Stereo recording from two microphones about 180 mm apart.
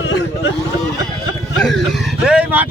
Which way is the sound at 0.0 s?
90° left.